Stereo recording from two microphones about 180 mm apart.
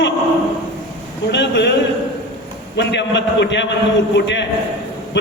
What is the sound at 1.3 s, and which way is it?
A man's voice, 75° left (ahead or behind).